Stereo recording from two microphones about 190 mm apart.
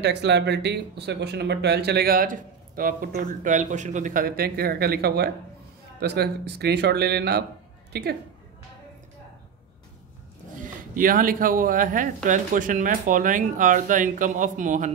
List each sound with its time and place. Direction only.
0.0 s a woman's voice: 65° right (ahead or behind)
10.5 s speech: 45° right (ahead or behind)